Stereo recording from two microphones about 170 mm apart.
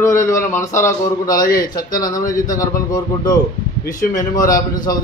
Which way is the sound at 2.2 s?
50° left (ahead or behind).